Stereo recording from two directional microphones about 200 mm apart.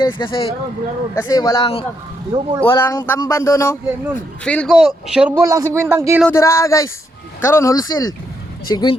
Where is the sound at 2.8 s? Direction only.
15° left (ahead or behind); by 6.2 s 15° right (ahead or behind).